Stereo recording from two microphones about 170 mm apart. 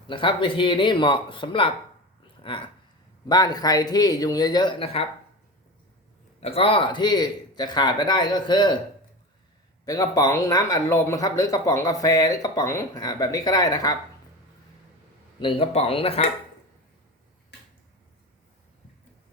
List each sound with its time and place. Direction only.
0.1 s speech: 30° left (ahead or behind)
6.4 s speech: 35° left (ahead or behind)
9.8 s speech: 20° left (ahead or behind)
15.4 s speech: 30° left (ahead or behind)